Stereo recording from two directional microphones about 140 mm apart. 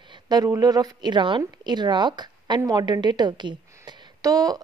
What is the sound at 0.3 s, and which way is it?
A woman's voice, 30° right (ahead or behind).